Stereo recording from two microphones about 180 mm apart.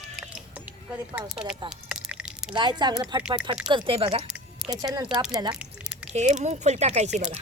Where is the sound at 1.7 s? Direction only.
5° right (ahead or behind).